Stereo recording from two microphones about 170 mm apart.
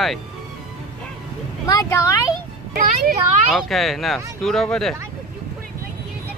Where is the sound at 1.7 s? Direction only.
20° left (ahead or behind).